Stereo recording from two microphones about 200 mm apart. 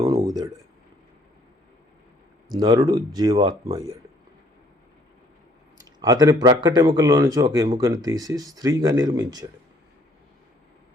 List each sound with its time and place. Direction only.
0.2 s a sound: 20° right (ahead or behind)
2.5 s speech: 20° right (ahead or behind)
5.8 s speech: 20° right (ahead or behind)